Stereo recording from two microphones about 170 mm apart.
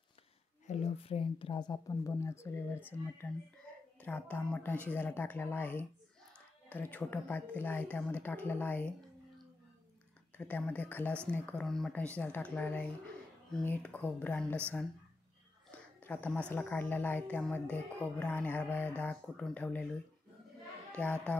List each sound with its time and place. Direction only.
0.7 s a woman's voice: 35° left (ahead or behind); by 8.9 s 10° left (ahead or behind)
10.3 s a woman's voice: 10° left (ahead or behind)
16.0 s a woman's voice: 10° left (ahead or behind)
21.0 s a woman's voice: 5° left (ahead or behind)